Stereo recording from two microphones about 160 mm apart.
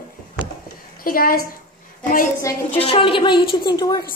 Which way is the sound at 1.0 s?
65° left (ahead or behind).